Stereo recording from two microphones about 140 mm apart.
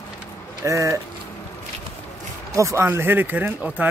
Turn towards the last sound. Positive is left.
turn(degrees=-10)  # may be behind; listen again after turning